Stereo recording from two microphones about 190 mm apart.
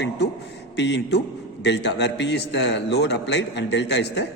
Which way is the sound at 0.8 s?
65° left (ahead or behind).